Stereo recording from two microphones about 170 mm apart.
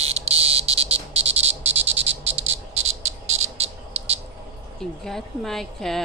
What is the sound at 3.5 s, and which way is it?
Cricket, 35° right (ahead or behind).